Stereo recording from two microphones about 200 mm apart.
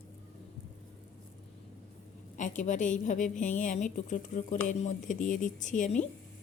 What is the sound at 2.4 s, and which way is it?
A woman's voice, 40° left (ahead or behind).